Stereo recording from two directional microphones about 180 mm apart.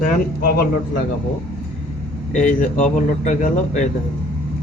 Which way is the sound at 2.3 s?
45° left (ahead or behind).